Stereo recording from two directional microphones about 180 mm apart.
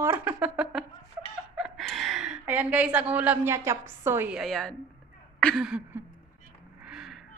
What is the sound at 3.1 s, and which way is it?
A woman's voice, 10° right (ahead or behind).